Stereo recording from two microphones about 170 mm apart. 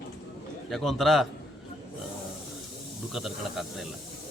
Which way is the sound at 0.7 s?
Centre (ahead or behind).